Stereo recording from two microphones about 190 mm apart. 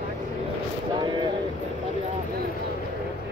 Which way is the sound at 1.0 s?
25° right (ahead or behind).